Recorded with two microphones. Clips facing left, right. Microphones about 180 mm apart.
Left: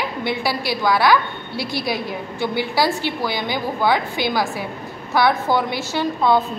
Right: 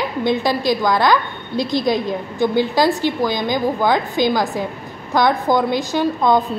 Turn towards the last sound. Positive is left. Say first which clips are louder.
# right 2 dB
turn(degrees=-15)  # may be behind; listen again after turning